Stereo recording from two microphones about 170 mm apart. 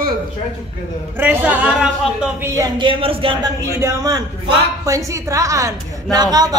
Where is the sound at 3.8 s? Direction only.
20° right (ahead or behind).